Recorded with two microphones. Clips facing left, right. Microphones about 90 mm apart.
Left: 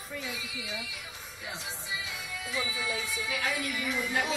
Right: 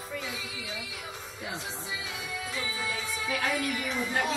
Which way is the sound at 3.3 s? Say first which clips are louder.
Right 4 dB; 45° right (ahead or behind).